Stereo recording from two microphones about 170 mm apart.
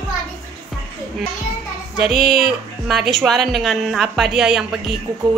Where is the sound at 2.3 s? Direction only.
Centre (ahead or behind).